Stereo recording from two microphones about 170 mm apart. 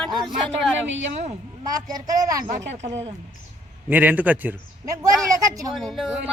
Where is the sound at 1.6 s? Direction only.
25° right (ahead or behind).